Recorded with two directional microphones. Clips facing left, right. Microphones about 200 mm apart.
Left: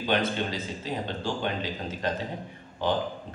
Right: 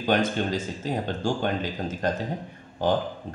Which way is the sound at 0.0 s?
45° right (ahead or behind).